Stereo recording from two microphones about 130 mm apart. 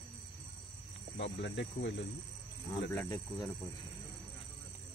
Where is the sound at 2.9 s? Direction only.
15° left (ahead or behind).